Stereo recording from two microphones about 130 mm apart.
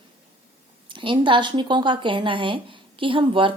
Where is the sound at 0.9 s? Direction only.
40° right (ahead or behind).